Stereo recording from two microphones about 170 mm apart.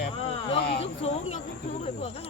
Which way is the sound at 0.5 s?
40° left (ahead or behind).